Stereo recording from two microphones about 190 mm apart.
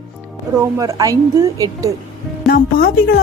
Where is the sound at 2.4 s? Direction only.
50° left (ahead or behind).